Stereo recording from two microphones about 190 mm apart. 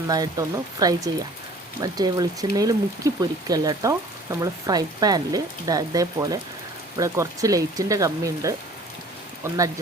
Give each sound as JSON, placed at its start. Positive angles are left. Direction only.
{"t": 0.1, "sound": "speech", "side_deg": -20}